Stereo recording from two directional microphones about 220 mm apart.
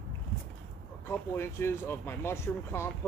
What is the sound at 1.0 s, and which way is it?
Speech, 10° left (ahead or behind).